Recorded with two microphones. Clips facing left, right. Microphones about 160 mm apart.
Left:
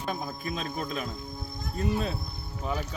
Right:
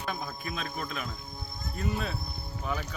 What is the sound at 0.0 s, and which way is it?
Cricket, 35° left (ahead or behind).